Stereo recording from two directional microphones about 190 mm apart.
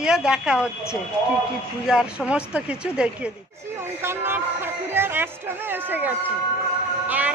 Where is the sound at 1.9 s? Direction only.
5° right (ahead or behind).